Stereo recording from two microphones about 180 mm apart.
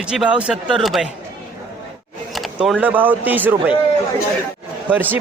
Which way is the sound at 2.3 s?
Centre (ahead or behind).